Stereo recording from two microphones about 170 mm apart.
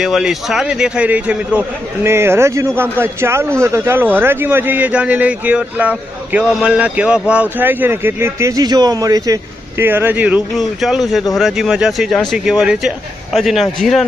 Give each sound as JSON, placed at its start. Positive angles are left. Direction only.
{"t": 0.0, "sound": "a man's voice", "side_deg": -5}